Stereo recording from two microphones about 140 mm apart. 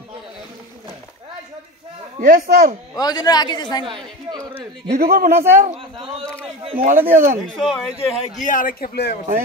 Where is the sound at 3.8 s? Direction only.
35° right (ahead or behind).